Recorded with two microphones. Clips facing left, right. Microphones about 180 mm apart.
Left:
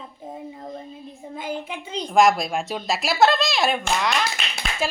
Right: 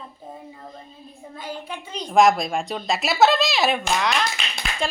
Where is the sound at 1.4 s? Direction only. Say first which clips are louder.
Left 3 dB; 25° left (ahead or behind).